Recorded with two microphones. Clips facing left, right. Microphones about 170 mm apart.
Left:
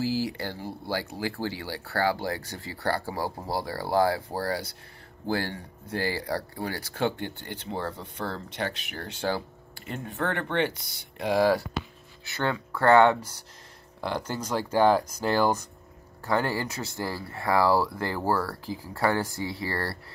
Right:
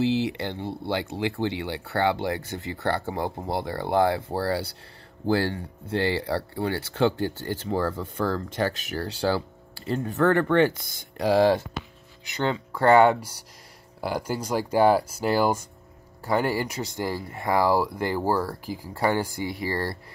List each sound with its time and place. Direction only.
0.0 s speech: 20° right (ahead or behind)